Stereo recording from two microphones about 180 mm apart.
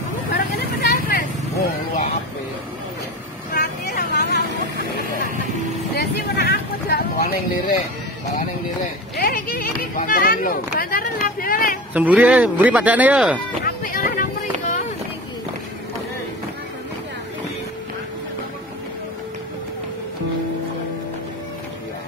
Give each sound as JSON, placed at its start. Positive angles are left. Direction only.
{"t": 0.3, "sound": "vehicle", "side_deg": 60}
{"t": 3.5, "sound": "vehicle", "side_deg": 60}
{"t": 5.9, "sound": "a sound", "side_deg": 65}
{"t": 9.1, "sound": "speech", "side_deg": 55}
{"t": 11.9, "sound": "speech", "side_deg": -10}
{"t": 13.7, "sound": "music", "side_deg": 50}